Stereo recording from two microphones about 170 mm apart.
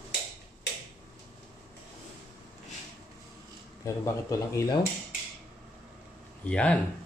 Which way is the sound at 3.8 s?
20° left (ahead or behind).